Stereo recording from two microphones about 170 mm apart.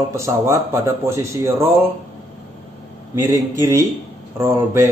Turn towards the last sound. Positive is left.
turn(degrees=-15)  # may be behind; listen again after turning